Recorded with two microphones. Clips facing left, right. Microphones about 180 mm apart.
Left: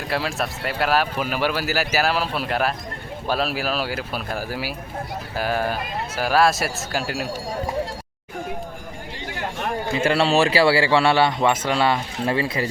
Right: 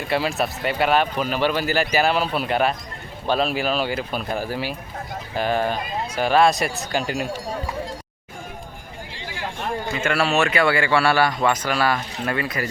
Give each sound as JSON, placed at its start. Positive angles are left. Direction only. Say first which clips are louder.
{"t": 0.0, "sound": "speech", "louder": "right 3 dB", "side_deg": 0}
{"t": 9.9, "sound": "a man's voice", "louder": "left 3 dB", "side_deg": 30}